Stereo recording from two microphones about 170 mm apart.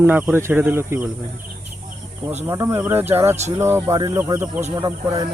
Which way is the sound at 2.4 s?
15° right (ahead or behind).